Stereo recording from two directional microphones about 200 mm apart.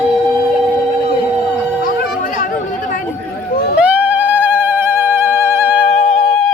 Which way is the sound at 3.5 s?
50° left (ahead or behind).